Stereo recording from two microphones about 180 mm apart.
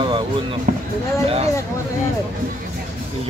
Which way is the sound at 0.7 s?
50° right (ahead or behind).